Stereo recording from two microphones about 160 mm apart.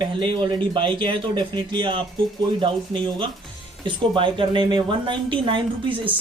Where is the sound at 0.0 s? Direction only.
30° right (ahead or behind).